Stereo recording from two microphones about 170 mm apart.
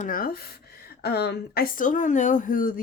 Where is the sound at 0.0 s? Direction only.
55° left (ahead or behind).